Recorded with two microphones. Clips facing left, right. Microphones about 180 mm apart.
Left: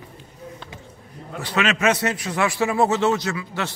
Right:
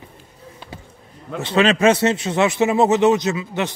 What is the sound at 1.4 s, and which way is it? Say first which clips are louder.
A man's voice: right 6 dB; 30° right (ahead or behind).